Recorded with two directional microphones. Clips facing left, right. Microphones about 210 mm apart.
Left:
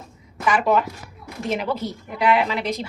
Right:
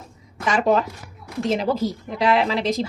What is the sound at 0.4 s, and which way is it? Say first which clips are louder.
A woman's voice: even; 35° right (ahead or behind).